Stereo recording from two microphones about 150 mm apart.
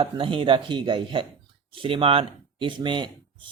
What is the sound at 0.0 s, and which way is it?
A man's voice, 35° right (ahead or behind).